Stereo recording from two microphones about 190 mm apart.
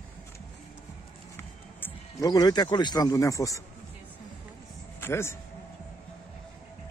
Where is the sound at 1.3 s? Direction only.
15° left (ahead or behind).